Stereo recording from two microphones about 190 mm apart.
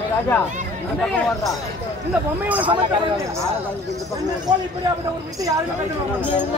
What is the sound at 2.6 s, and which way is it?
Speech, 25° right (ahead or behind).